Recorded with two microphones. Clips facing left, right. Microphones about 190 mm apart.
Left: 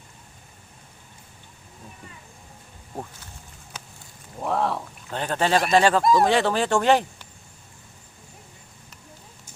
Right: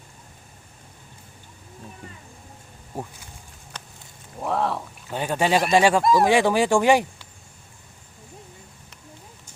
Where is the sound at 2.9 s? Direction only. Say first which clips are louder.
Right 2 dB; 10° right (ahead or behind).